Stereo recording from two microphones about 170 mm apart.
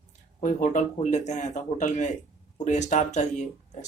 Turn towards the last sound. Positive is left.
turn(degrees=45)  # may be behind; listen again after turning